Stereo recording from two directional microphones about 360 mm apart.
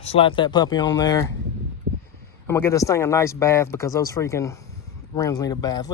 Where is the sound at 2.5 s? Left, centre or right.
Centre.